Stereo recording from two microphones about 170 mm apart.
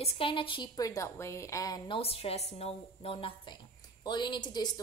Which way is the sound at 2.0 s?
35° left (ahead or behind).